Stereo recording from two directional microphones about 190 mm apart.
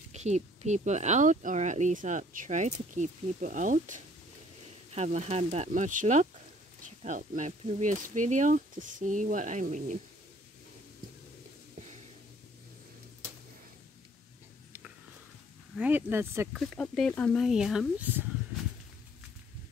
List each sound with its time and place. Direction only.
0.1 s speech: 35° right (ahead or behind)
15.7 s speech: 10° right (ahead or behind)
16.5 s speech: 5° left (ahead or behind)